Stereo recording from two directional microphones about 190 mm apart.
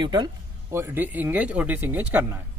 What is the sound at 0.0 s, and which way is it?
Speech, 25° right (ahead or behind).